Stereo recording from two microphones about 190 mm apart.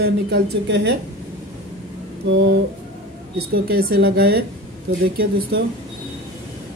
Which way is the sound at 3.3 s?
50° right (ahead or behind).